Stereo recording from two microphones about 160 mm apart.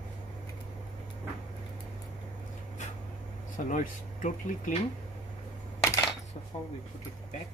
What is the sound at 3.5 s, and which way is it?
Speech, 55° left (ahead or behind).